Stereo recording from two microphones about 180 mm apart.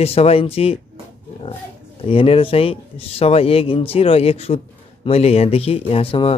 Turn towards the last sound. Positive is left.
turn(degrees=30)  # may be behind; listen again after turning